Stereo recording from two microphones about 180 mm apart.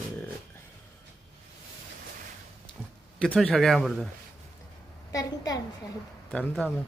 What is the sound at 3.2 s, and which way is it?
Speech, 5° left (ahead or behind).